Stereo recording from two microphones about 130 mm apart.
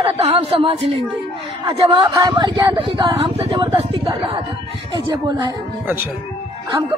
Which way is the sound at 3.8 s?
40° right (ahead or behind).